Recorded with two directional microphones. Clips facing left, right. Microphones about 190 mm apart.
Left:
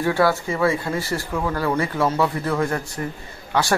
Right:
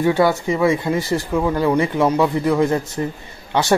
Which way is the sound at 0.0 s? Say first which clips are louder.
Right 3 dB; 20° right (ahead or behind).